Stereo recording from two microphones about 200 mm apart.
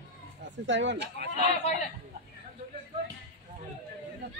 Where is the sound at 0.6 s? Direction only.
65° right (ahead or behind).